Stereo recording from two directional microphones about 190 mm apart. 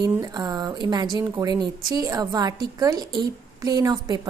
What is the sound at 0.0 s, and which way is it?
A woman's voice, 20° right (ahead or behind).